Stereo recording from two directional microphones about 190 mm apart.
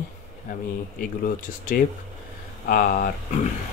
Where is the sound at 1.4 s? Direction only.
45° left (ahead or behind).